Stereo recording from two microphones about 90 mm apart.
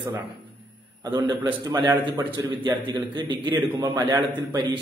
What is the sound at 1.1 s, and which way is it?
A man's voice, 50° right (ahead or behind).